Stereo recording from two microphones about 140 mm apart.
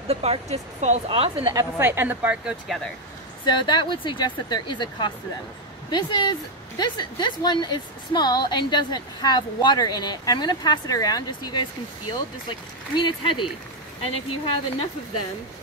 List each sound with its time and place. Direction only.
0.1 s speech: 45° right (ahead or behind)
1.0 s speech: 45° right (ahead or behind)
1.5 s a woman's voice: 20° right (ahead or behind)
3.4 s a woman's voice: 30° left (ahead or behind)